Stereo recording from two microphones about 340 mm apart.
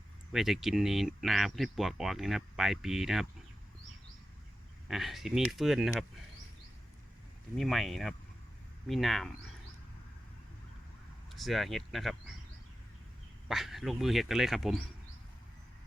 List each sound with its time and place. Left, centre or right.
0.3 s speech: centre
4.9 s speech: centre
7.5 s speech: centre
11.3 s speech: centre
13.5 s speech: centre